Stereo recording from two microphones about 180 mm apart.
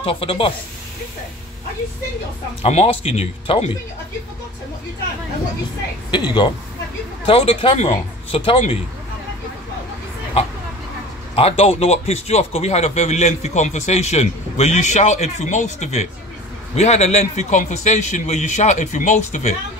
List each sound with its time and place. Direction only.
0.0 s a man's voice: 30° left (ahead or behind)
2.6 s a man's voice: 35° left (ahead or behind)
6.1 s a man's voice: 25° left (ahead or behind)
11.3 s a man's voice: 35° left (ahead or behind)